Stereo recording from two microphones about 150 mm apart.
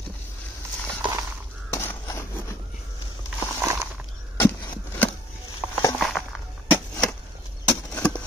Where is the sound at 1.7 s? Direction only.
20° left (ahead or behind).